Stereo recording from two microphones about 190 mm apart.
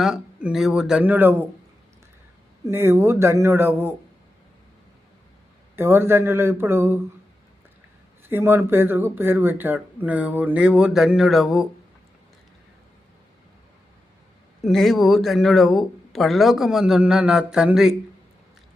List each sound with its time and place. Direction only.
0.0 s speech: 5° right (ahead or behind)
2.6 s speech: 15° right (ahead or behind)
5.7 s speech: 10° right (ahead or behind)
8.3 s speech: 10° right (ahead or behind)
14.6 s speech: centre (ahead or behind)